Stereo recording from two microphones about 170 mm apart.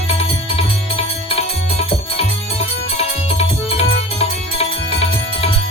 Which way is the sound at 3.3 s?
35° left (ahead or behind).